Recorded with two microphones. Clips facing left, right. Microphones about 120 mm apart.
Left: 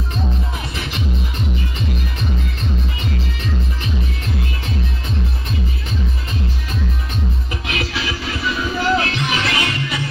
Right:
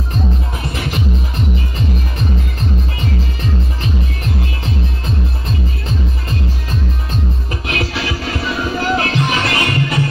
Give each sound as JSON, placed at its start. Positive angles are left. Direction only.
{"t": 7.6, "sound": "music", "side_deg": -45}